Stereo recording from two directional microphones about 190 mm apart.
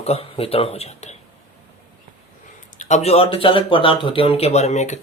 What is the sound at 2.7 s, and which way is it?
Speech, 35° left (ahead or behind).